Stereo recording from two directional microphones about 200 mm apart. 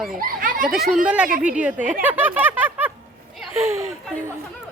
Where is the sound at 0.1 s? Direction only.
45° right (ahead or behind).